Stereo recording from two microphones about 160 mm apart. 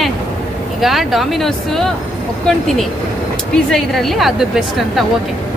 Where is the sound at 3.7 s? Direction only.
Centre (ahead or behind).